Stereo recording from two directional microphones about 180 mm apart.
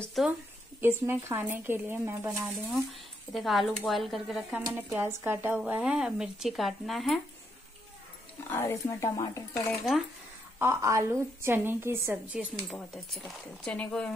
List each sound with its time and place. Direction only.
0.0 s speech: centre (ahead or behind)
0.7 s a woman's voice: 10° right (ahead or behind)
2.4 s speech: centre (ahead or behind)
8.5 s speech: 15° left (ahead or behind)
10.6 s a woman's voice: 15° right (ahead or behind)
12.6 s speech: centre (ahead or behind)